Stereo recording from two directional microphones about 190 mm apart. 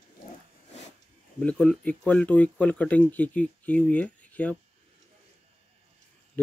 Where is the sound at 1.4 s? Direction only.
5° left (ahead or behind).